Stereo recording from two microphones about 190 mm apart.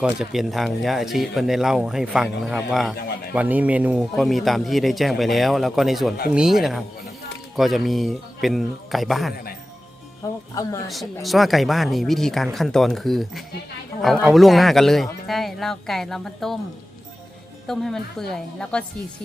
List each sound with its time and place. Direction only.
0.0 s speech: 5° right (ahead or behind)
10.5 s speech: 15° left (ahead or behind)
10.8 s speech: centre (ahead or behind)
17.7 s speech: centre (ahead or behind)